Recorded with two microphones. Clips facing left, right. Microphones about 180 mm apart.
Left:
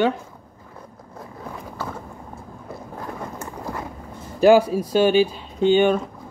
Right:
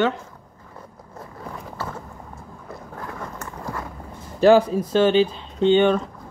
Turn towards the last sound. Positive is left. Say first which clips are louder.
# even
turn(degrees=10)  # may be behind; listen again after turning